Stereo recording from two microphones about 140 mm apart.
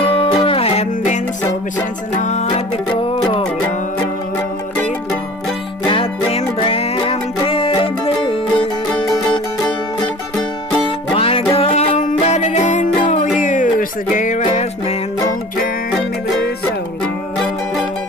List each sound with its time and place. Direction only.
0.0 s music: 40° left (ahead or behind); by 2.6 s 55° left (ahead or behind)
2.9 s music: 35° left (ahead or behind)
5.9 s music: 40° left (ahead or behind)
11.1 s music: 45° left (ahead or behind)
12.0 s music: 60° left (ahead or behind)